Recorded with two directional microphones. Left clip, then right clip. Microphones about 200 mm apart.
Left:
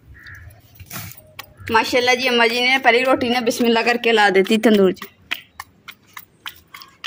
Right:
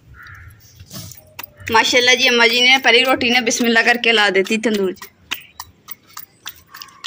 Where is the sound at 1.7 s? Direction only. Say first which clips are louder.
Right 3 dB; 20° left (ahead or behind); by 4.9 s 55° left (ahead or behind).